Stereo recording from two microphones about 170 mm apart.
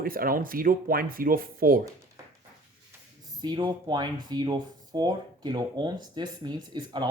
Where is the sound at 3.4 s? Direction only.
25° right (ahead or behind).